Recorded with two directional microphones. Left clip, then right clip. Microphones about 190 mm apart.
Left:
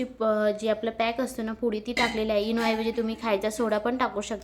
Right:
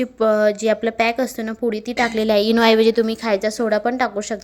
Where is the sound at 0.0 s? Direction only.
35° right (ahead or behind).